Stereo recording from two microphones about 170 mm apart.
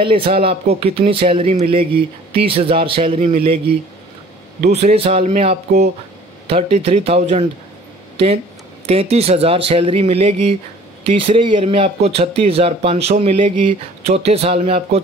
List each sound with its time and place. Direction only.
0.0 s speech: 30° right (ahead or behind)
4.6 s speech: 45° right (ahead or behind)
8.8 s speech: 35° right (ahead or behind)